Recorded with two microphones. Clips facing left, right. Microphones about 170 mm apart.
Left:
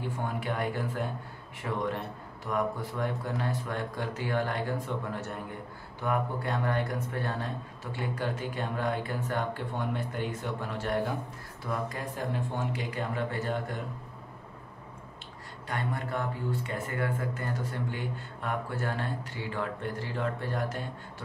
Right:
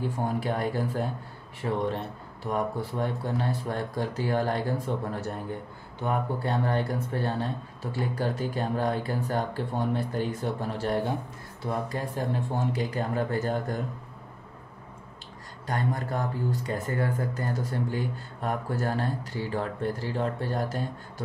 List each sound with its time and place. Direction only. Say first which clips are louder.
0.2 s speech: right 4 dB; 35° right (ahead or behind)
15.6 s speech: right 4 dB; 40° right (ahead or behind)